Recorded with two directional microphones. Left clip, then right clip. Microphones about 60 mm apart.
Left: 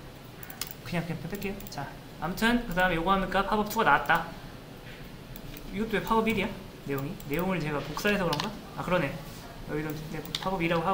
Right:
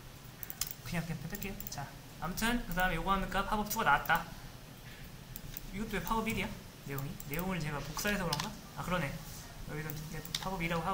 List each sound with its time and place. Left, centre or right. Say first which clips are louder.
0.6 s a sound: left 5 dB; right
1.4 s speech: left 7 dB; right
5.8 s speech: left 9 dB; right